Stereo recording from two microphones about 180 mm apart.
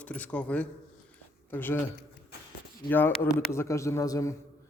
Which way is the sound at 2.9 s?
10° left (ahead or behind).